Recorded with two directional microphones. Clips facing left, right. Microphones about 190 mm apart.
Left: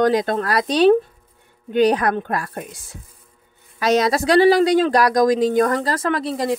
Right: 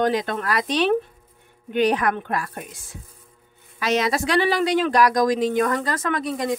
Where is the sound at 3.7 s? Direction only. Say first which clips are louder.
Left 4 dB; 40° left (ahead or behind).